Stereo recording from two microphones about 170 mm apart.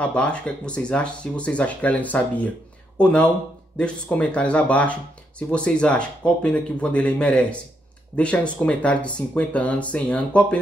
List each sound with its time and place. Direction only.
0.0 s speech: 5° left (ahead or behind)